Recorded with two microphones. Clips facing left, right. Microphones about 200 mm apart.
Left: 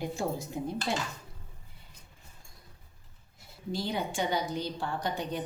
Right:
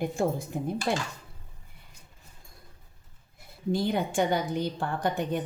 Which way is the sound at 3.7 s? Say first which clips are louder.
Right 6 dB; 55° right (ahead or behind).